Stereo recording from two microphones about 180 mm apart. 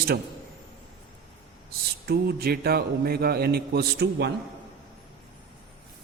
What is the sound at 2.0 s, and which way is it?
A man's voice, 60° right (ahead or behind).